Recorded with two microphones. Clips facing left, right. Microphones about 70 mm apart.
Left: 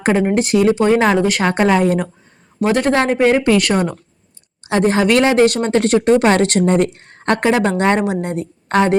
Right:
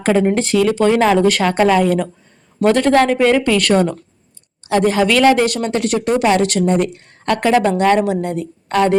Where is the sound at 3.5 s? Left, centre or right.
Centre.